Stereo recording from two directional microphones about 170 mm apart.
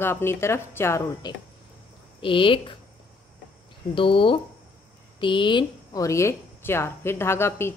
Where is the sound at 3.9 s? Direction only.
30° left (ahead or behind); by 7.7 s 15° left (ahead or behind).